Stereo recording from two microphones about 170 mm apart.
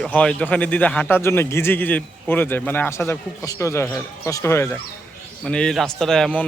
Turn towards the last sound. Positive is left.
turn(degrees=5)  # may be behind; listen again after turning